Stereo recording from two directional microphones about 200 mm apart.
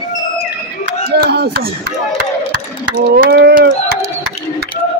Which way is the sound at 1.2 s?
50° right (ahead or behind).